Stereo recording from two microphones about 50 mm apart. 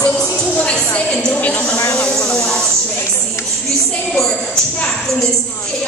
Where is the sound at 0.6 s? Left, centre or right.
Left.